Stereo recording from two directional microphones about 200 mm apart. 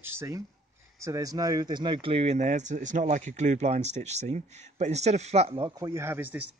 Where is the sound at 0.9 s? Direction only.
15° right (ahead or behind).